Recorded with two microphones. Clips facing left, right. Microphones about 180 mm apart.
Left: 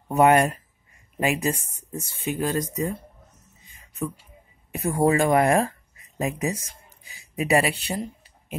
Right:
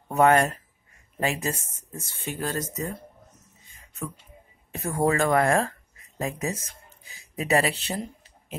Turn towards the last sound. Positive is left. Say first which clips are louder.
# left 2 dB
turn(degrees=10)  # may be behind; listen again after turning